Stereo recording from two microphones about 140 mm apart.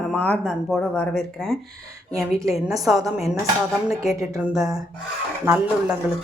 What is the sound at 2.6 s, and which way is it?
Speech, centre (ahead or behind).